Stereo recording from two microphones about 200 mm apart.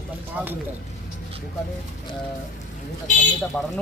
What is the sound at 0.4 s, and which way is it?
Speech, 10° right (ahead or behind).